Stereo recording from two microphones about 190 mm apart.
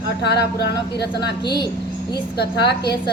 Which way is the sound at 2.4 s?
60° left (ahead or behind).